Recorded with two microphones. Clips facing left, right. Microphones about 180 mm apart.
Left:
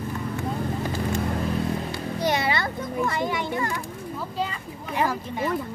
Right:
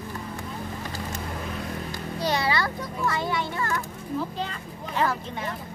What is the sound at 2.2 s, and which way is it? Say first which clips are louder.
A child's voice: left 1 dB; 20° left (ahead or behind).